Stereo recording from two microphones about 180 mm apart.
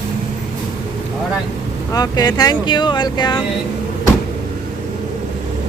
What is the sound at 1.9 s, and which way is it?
Speech, 20° left (ahead or behind).